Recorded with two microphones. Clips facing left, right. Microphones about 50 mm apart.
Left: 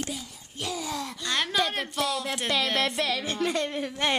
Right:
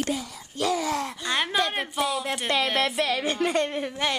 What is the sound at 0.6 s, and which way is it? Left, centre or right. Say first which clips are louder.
Speech: right 7 dB; right.